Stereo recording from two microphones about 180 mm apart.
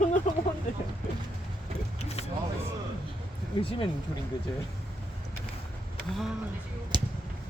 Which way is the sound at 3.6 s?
30° left (ahead or behind).